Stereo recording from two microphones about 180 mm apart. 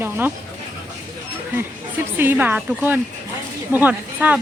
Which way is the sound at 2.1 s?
10° right (ahead or behind).